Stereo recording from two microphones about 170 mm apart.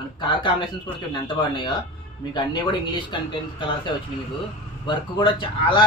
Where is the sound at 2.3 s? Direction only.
25° left (ahead or behind).